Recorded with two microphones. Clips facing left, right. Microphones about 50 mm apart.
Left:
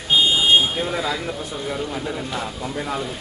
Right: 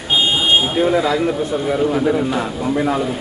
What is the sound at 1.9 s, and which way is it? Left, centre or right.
Speech, right.